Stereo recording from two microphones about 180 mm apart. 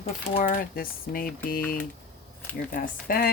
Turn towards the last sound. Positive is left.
turn(degrees=50)  # may be behind; listen again after turning